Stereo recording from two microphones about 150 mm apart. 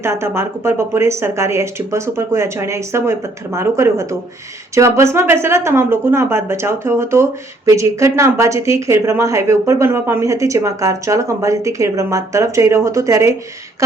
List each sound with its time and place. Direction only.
0.0 s a woman's voice: 15° right (ahead or behind)